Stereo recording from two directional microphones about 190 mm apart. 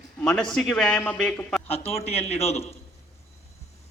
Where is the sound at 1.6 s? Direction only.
30° left (ahead or behind).